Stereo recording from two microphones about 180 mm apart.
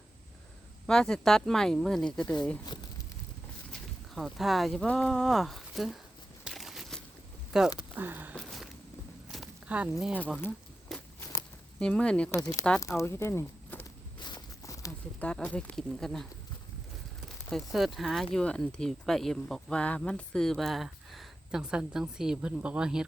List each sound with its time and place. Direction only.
0.9 s speech: 5° left (ahead or behind)
3.7 s speech: centre (ahead or behind)
6.4 s crumpling: centre (ahead or behind)
7.8 s speech: 10° right (ahead or behind)
8.4 s a sound: centre (ahead or behind)
9.3 s speech: 5° right (ahead or behind)
10.9 s walk: centre (ahead or behind)
11.8 s speech: 5° left (ahead or behind)
12.4 s speech: 20° left (ahead or behind)
14.2 s walk: 25° left (ahead or behind)
15.3 s speech: 5° left (ahead or behind)
17.2 s speech: centre (ahead or behind)